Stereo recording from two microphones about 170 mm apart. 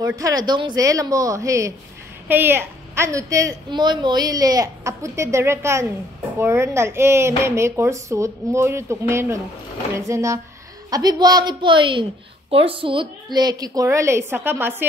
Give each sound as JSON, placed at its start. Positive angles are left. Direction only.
{"t": 0.0, "sound": "a woman's voice", "side_deg": -20}